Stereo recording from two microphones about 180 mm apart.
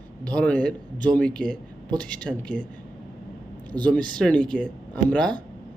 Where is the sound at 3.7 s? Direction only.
20° right (ahead or behind).